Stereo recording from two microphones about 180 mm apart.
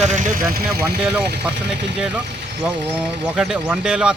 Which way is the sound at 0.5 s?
60° right (ahead or behind).